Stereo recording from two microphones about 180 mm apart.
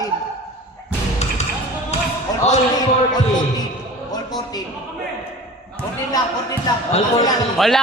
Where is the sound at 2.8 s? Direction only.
20° left (ahead or behind).